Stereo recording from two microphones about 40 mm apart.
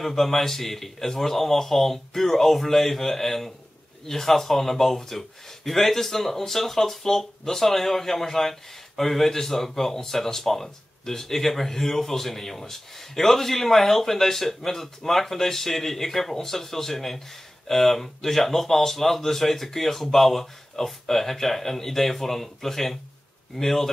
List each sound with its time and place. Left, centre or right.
0.0 s speech: centre